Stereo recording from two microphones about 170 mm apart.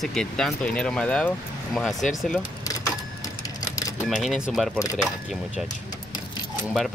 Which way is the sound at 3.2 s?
20° left (ahead or behind).